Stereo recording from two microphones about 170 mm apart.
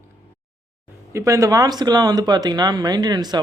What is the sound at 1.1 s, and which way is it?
Speech, 20° right (ahead or behind).